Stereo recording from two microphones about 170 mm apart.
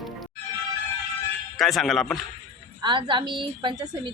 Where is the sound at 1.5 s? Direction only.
Centre (ahead or behind).